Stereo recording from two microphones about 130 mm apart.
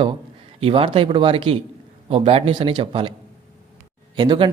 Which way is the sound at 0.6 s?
45° right (ahead or behind).